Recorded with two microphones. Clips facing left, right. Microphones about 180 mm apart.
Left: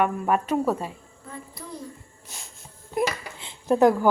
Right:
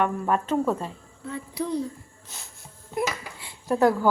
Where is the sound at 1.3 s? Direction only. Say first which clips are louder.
Right 10 dB; 70° right (ahead or behind).